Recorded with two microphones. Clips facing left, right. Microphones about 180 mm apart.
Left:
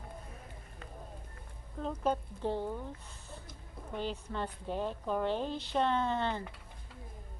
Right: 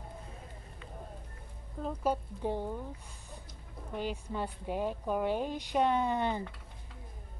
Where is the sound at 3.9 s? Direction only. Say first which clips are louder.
Right 1 dB; 10° right (ahead or behind).